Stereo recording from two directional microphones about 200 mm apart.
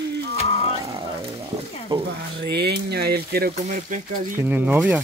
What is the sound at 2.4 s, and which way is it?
Speech, 55° right (ahead or behind).